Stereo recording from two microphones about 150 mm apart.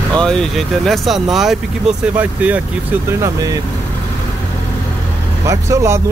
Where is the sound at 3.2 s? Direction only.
25° right (ahead or behind).